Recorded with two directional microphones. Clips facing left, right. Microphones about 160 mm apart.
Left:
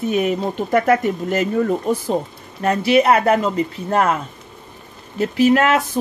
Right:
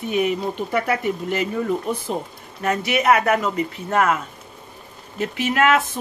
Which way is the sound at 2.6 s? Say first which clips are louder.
Left 4 dB; 30° left (ahead or behind).